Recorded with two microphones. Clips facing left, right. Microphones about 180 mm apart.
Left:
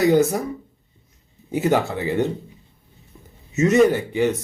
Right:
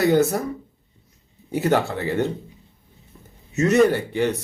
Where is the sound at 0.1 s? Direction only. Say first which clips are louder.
Left 1 dB; centre (ahead or behind).